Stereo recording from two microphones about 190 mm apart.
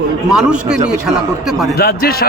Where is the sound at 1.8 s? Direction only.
55° left (ahead or behind).